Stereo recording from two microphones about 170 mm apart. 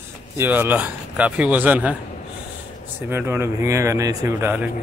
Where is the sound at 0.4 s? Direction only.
10° right (ahead or behind).